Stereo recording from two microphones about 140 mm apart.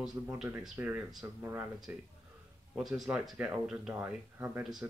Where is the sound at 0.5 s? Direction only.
15° right (ahead or behind).